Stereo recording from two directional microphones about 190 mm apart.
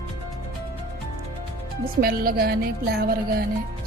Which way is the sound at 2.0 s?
50° right (ahead or behind).